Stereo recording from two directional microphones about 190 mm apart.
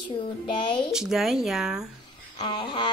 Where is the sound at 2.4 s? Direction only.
25° left (ahead or behind).